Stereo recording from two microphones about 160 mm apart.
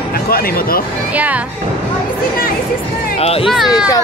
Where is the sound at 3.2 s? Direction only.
40° left (ahead or behind).